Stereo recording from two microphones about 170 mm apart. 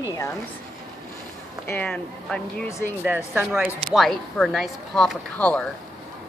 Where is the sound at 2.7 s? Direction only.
15° left (ahead or behind).